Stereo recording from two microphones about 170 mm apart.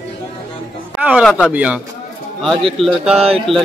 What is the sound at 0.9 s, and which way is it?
Speech, 10° right (ahead or behind).